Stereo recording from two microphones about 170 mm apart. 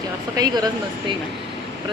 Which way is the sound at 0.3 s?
25° right (ahead or behind).